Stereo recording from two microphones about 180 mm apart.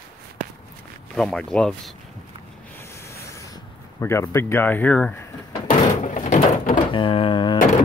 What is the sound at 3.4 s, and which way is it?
Speech, 15° left (ahead or behind).